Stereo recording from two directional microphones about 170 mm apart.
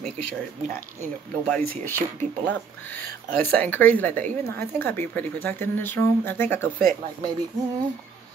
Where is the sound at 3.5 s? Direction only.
10° left (ahead or behind).